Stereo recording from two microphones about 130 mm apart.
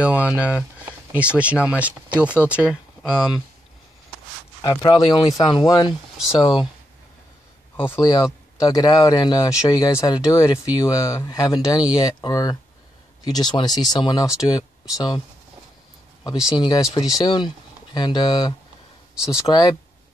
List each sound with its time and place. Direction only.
0.0 s speech: 10° right (ahead or behind)
4.6 s speech: 35° left (ahead or behind)
7.7 s speech: 20° left (ahead or behind); by 15.2 s 35° left (ahead or behind)
16.5 s speech: 35° left (ahead or behind)
19.1 s speech: 5° right (ahead or behind)
19.4 s speech: 30° left (ahead or behind)